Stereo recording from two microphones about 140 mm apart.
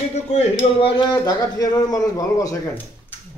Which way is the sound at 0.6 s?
40° left (ahead or behind).